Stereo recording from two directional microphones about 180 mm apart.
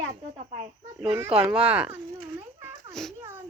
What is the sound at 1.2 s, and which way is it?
Speech, 10° right (ahead or behind).